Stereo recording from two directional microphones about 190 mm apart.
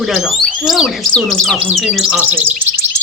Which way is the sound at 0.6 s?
Centre (ahead or behind).